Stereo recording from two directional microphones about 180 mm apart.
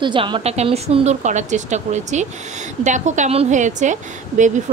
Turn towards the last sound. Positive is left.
turn(degrees=-45)  # may be behind; listen again after turning